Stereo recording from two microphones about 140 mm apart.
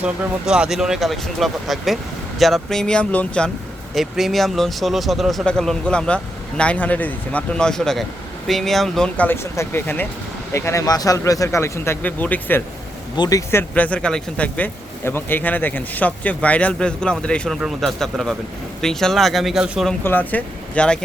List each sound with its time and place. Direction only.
0.0 s speech: 5° right (ahead or behind); by 12.6 s 15° left (ahead or behind)
13.1 s speech: 30° left (ahead or behind)
13.5 s speech: 15° left (ahead or behind); by 19.9 s 5° right (ahead or behind)
20.1 s speech: 10° left (ahead or behind)